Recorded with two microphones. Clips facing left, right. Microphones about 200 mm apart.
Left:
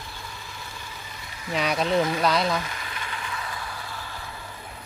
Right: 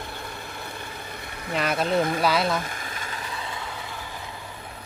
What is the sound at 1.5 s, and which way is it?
Speech, centre (ahead or behind).